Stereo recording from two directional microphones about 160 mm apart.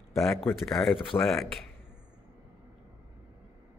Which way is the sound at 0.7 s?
Centre (ahead or behind).